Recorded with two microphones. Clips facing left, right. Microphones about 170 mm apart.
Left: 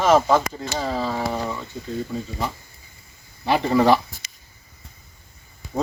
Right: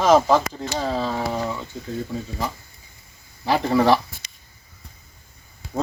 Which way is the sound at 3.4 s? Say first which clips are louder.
Left 1 dB; centre (ahead or behind).